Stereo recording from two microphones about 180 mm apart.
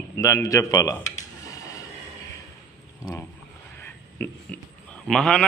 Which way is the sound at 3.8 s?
10° left (ahead or behind).